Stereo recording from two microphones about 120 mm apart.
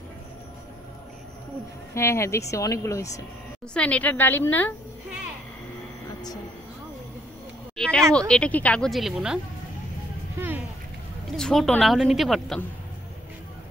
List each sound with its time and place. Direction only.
2.0 s speech: 25° left (ahead or behind)
3.7 s speech: 10° left (ahead or behind)
7.7 s a sound: 5° left (ahead or behind)
8.1 s speech: 10° left (ahead or behind)
11.3 s a woman's voice: 5° left (ahead or behind)